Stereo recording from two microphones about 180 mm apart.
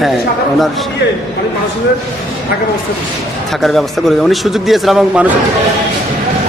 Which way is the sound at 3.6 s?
Centre (ahead or behind).